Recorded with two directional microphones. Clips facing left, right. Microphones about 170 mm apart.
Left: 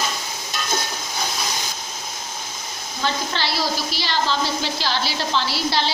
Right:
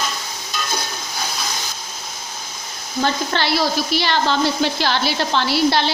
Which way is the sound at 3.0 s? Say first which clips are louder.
Right 4 dB; 55° right (ahead or behind).